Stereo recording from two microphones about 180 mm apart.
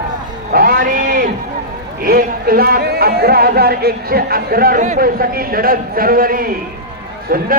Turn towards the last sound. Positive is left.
turn(degrees=-50)  # may be behind; listen again after turning